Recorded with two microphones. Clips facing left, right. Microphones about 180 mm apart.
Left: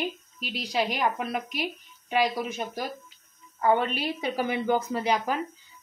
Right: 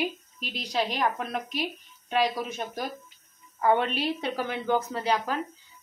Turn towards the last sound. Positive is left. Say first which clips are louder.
# left 1 dB
turn(degrees=15)  # may be behind; listen again after turning